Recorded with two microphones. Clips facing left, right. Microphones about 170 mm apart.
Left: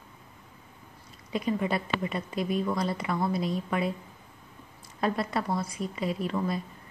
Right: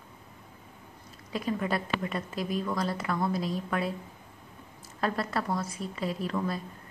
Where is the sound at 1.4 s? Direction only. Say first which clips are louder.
Left 2 dB; 5° left (ahead or behind).